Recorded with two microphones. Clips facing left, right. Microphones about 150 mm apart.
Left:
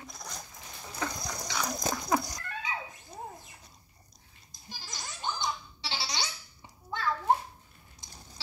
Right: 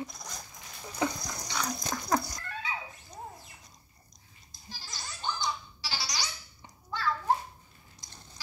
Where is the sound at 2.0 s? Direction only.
10° left (ahead or behind).